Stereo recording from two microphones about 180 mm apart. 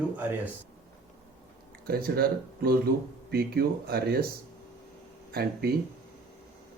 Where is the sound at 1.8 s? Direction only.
55° right (ahead or behind).